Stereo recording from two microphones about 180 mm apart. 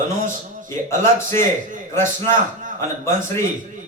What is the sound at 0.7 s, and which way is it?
Speech, 15° left (ahead or behind).